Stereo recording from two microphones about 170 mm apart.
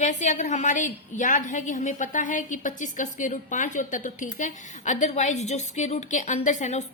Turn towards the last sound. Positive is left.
turn(degrees=45)  # may be behind; listen again after turning